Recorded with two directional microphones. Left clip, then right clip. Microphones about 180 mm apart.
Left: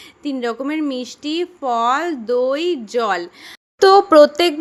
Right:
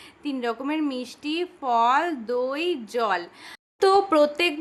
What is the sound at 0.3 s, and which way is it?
Speech, 20° left (ahead or behind).